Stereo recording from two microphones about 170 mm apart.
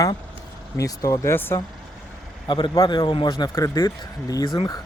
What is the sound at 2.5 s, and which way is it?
Speech, 25° left (ahead or behind).